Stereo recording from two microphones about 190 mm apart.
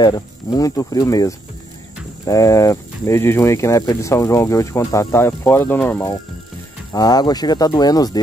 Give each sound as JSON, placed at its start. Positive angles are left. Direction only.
{"t": 0.0, "sound": "speech", "side_deg": 20}